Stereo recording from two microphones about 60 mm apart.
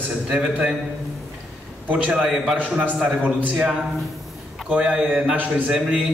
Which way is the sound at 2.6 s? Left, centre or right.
Right.